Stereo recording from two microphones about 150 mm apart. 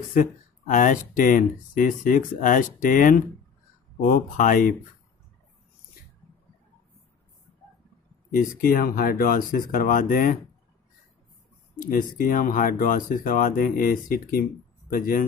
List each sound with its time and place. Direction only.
0.1 s speech: 60° left (ahead or behind)
8.3 s speech: 70° left (ahead or behind)
11.8 s speech: 65° left (ahead or behind)